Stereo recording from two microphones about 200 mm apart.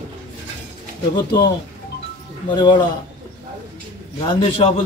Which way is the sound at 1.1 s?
20° left (ahead or behind).